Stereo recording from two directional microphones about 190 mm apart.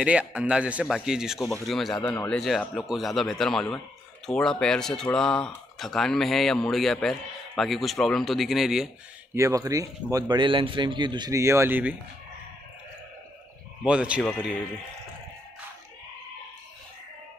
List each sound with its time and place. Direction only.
0.0 s a man's voice: 5° right (ahead or behind)
2.0 s speech: 20° left (ahead or behind)
2.2 s a man's voice: centre (ahead or behind)
9.3 s speech: 15° right (ahead or behind)
13.8 s a man's voice: 5° right (ahead or behind)